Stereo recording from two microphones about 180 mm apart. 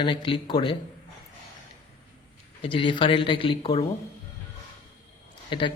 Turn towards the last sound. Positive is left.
turn(degrees=25)  # may be behind; listen again after turning